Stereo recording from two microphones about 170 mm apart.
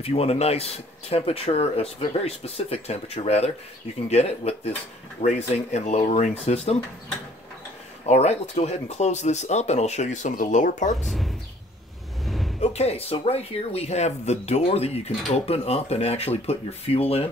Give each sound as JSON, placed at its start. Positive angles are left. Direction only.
{"t": 0.0, "sound": "speech", "side_deg": 35}
{"t": 8.1, "sound": "speech", "side_deg": 40}
{"t": 11.1, "sound": "speech", "side_deg": 0}
{"t": 12.3, "sound": "a sound", "side_deg": 0}
{"t": 12.5, "sound": "speech", "side_deg": 40}